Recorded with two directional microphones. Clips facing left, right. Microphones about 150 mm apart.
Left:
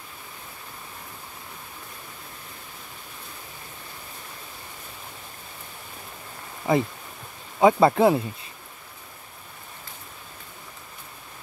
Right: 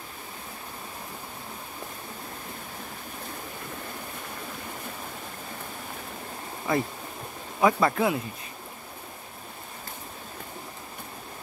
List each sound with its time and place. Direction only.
6.7 s speech: 20° left (ahead or behind)